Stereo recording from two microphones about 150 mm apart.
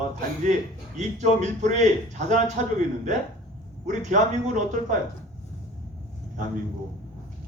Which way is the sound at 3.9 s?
55° right (ahead or behind).